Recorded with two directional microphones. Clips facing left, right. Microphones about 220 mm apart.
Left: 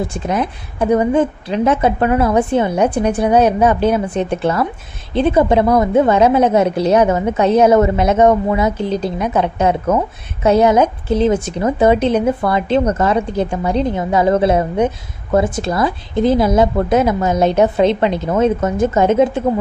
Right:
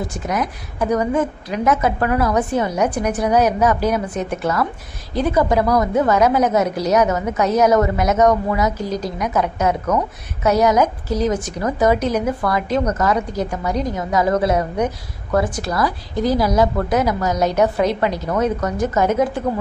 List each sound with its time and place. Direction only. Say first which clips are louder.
0.0 s a woman's voice: left 4 dB; 30° left (ahead or behind)